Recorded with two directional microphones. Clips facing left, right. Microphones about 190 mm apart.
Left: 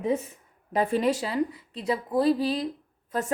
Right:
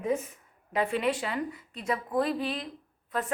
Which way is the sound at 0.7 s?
40° left (ahead or behind).